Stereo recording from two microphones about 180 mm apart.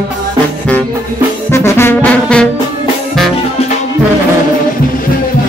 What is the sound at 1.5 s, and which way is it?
Brass instrument, 15° left (ahead or behind).